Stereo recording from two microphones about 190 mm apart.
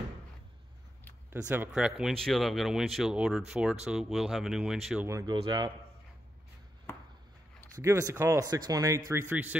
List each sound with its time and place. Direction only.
1.5 s speech: 5° right (ahead or behind)
5.0 s speech: 20° right (ahead or behind)
7.7 s speech: 15° right (ahead or behind)